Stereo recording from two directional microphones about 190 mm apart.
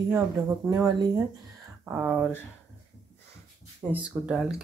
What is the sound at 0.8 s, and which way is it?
Speech, 20° right (ahead or behind).